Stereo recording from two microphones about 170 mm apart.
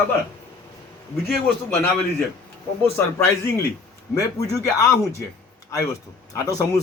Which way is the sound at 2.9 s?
15° left (ahead or behind).